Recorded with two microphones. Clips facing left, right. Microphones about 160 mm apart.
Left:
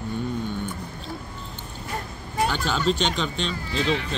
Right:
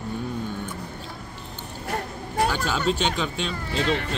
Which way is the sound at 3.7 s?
60° right (ahead or behind).